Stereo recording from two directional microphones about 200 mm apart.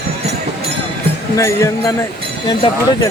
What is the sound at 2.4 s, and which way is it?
Speech, 20° left (ahead or behind).